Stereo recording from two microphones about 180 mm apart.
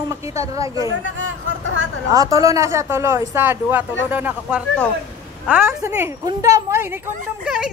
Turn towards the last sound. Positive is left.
turn(degrees=-5)  # may be behind; listen again after turning